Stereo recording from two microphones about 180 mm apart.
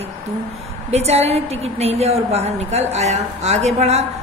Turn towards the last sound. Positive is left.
turn(degrees=-35)  # may be behind; listen again after turning